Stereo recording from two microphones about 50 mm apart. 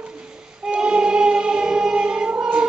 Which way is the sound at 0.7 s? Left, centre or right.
Centre.